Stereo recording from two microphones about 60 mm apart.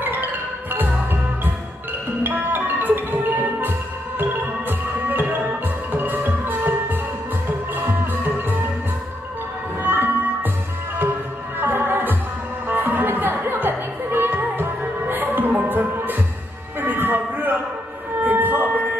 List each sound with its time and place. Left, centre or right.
2.2 s music: right
9.8 s music: right
11.6 s music: right
18.2 s a sound: right